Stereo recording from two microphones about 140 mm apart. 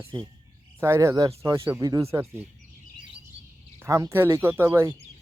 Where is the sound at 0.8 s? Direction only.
20° right (ahead or behind).